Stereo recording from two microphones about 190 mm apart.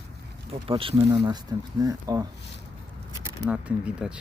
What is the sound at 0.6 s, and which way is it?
Speech, 30° right (ahead or behind).